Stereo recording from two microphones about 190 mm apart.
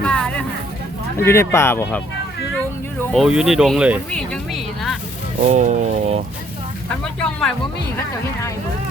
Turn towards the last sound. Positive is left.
turn(degrees=5)  # may be behind; listen again after turning